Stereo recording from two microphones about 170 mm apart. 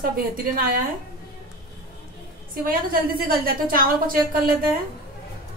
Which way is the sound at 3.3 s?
60° right (ahead or behind).